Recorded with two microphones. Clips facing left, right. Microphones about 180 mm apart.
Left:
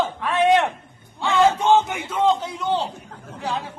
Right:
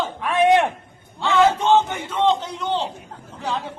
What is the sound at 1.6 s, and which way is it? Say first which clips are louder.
A man's voice: even; 10° left (ahead or behind).